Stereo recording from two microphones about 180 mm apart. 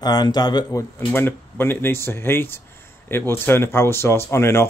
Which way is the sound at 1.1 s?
10° left (ahead or behind).